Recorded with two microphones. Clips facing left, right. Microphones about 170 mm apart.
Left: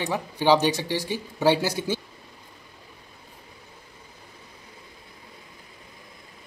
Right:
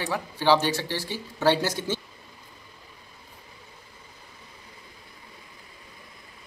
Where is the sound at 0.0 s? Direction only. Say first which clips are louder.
Left 2 dB; 15° left (ahead or behind).